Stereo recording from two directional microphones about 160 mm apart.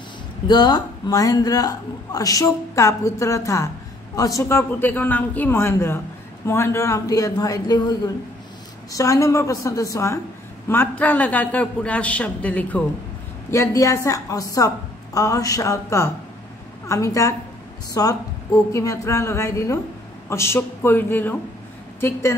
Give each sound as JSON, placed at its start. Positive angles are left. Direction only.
{"t": 0.5, "sound": "a woman's voice", "side_deg": 25}
{"t": 8.9, "sound": "a woman's voice", "side_deg": 20}